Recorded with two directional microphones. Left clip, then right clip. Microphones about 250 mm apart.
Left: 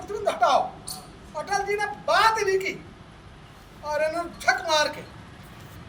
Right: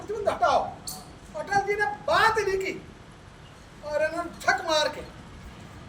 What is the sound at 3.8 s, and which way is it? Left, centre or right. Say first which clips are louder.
A man's voice: left 1 dB; centre.